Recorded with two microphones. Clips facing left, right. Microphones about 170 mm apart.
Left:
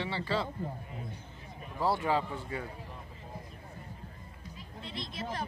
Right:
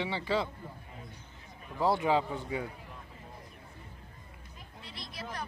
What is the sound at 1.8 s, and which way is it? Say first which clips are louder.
Speech: right 2 dB; 15° right (ahead or behind).